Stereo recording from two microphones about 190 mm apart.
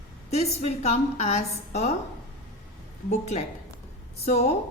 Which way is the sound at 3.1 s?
35° left (ahead or behind).